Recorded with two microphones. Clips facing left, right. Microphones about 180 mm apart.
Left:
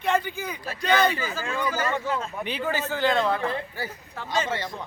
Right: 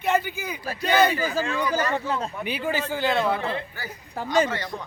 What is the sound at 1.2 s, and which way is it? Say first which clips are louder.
Speech: right 4 dB; 35° right (ahead or behind).